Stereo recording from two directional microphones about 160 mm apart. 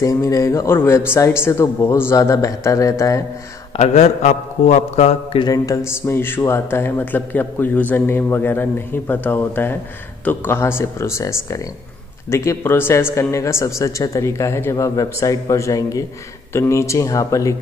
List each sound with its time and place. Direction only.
0.0 s speech: 20° left (ahead or behind)
3.7 s a man's voice: 45° left (ahead or behind)
5.4 s speech: 20° left (ahead or behind)